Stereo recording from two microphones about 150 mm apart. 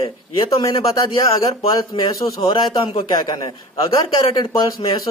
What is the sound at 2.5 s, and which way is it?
Speech, 35° left (ahead or behind).